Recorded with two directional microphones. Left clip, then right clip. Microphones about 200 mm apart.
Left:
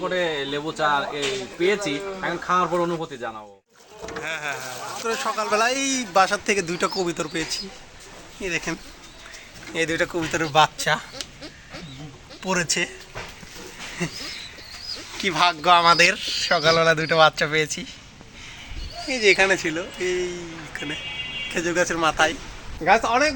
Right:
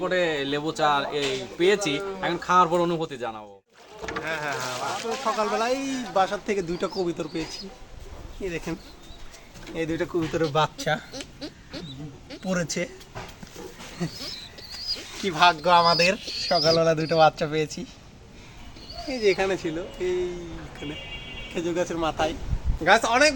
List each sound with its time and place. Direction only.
0.0 s speech: 30° right (ahead or behind)
4.2 s a man's voice: 5° right (ahead or behind)
5.2 s a man's voice: 5° left (ahead or behind)
12.5 s a man's voice: 5° left (ahead or behind)
15.2 s a man's voice: centre (ahead or behind)
19.0 s a man's voice: 5° right (ahead or behind)